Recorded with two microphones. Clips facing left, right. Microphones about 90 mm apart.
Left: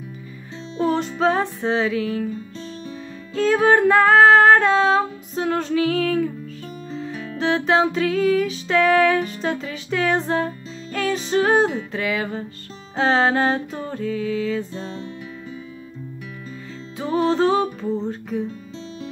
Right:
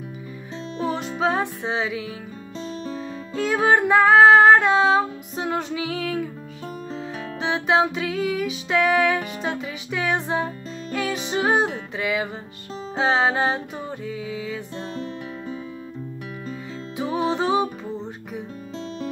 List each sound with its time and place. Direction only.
0.7 s music: 5° right (ahead or behind)
3.3 s music: 15° right (ahead or behind)
7.3 s music: 15° right (ahead or behind)
17.0 s music: 10° right (ahead or behind)